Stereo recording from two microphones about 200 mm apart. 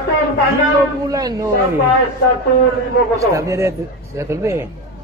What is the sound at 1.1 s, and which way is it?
Speech, 15° right (ahead or behind).